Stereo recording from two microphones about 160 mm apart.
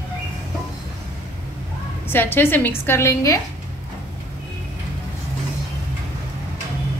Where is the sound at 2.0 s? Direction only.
15° left (ahead or behind).